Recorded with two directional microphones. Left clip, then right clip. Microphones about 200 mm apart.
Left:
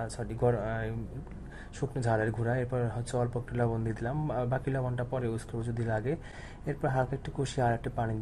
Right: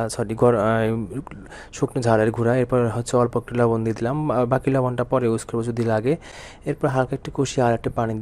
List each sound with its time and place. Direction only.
0.0 s speech: 35° right (ahead or behind)